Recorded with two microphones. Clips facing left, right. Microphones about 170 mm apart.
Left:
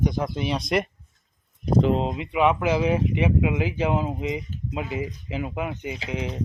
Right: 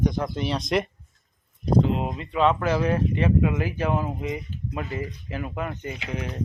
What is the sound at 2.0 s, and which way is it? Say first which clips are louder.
Speech: left 1 dB; 20° left (ahead or behind).